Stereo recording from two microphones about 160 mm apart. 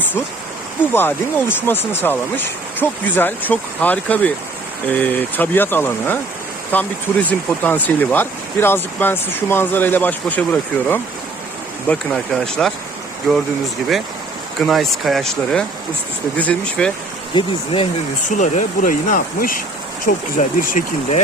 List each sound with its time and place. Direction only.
0.9 s speech: 15° left (ahead or behind)
14.6 s speech: centre (ahead or behind)
17.3 s speech: 35° left (ahead or behind)
18.3 s speech: 50° left (ahead or behind)